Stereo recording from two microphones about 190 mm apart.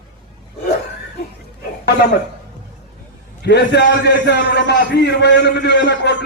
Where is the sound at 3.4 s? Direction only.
60° left (ahead or behind).